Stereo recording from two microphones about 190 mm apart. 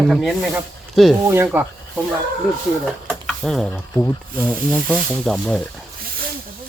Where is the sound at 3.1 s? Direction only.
Centre (ahead or behind).